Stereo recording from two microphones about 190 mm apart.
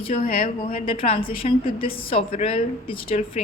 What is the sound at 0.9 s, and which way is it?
A woman's voice, 30° left (ahead or behind).